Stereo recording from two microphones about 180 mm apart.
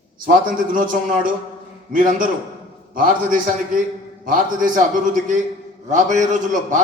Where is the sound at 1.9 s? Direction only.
50° right (ahead or behind).